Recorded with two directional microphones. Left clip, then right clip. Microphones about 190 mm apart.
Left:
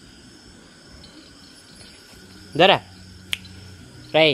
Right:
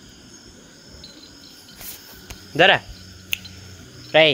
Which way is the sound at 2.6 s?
15° left (ahead or behind).